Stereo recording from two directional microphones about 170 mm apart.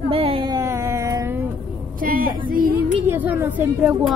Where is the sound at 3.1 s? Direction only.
10° right (ahead or behind).